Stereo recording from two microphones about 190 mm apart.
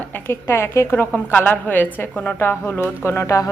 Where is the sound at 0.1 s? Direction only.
10° left (ahead or behind).